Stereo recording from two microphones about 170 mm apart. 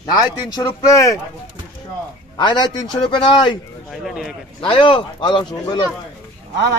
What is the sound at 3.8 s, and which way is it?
Speech, centre (ahead or behind).